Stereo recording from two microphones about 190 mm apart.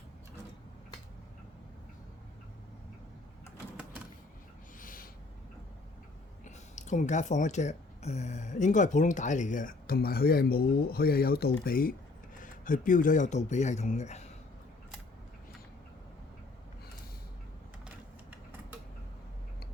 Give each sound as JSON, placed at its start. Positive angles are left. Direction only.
{"t": 4.8, "sound": "owl", "side_deg": 45}
{"t": 6.4, "sound": "speech", "side_deg": 40}
{"t": 17.8, "sound": "typewriter", "side_deg": -10}